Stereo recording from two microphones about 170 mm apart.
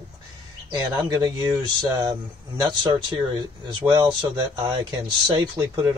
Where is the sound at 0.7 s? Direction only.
25° right (ahead or behind).